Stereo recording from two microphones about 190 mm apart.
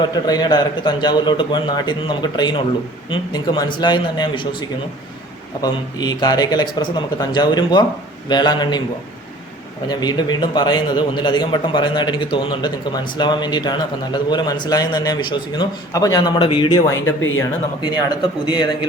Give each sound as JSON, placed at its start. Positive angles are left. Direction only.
{"t": 0.0, "sound": "speech", "side_deg": 20}
{"t": 5.6, "sound": "speech", "side_deg": 20}
{"t": 9.9, "sound": "speech", "side_deg": 20}
{"t": 17.2, "sound": "speech", "side_deg": 90}
{"t": 17.8, "sound": "speech", "side_deg": 25}